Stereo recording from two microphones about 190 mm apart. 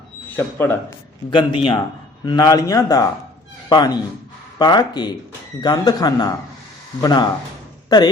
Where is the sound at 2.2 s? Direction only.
20° left (ahead or behind).